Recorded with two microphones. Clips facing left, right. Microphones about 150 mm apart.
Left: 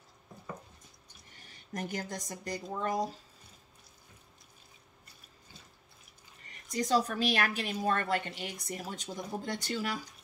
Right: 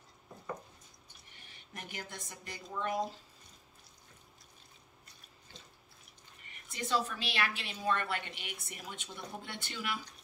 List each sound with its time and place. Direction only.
1.3 s speech: 40° left (ahead or behind)
6.7 s a woman's voice: 40° left (ahead or behind)